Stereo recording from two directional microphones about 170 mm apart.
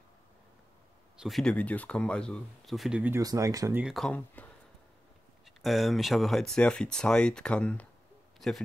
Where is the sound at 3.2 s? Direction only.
20° right (ahead or behind).